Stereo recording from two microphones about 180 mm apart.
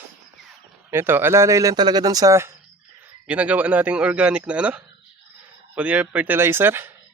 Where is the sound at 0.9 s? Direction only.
10° right (ahead or behind).